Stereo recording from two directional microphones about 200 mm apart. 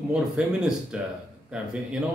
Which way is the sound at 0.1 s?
5° right (ahead or behind).